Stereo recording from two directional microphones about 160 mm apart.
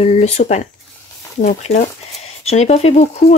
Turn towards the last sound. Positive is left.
turn(degrees=45)  # may be behind; listen again after turning